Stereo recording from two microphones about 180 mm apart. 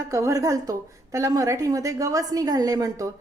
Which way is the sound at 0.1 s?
20° right (ahead or behind).